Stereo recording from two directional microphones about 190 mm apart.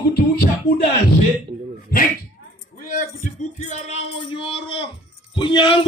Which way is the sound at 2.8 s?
45° left (ahead or behind).